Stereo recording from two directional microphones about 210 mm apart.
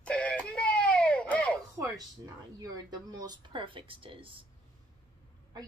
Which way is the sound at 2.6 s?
15° right (ahead or behind).